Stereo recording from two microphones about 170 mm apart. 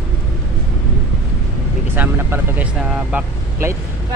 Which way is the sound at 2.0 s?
10° right (ahead or behind).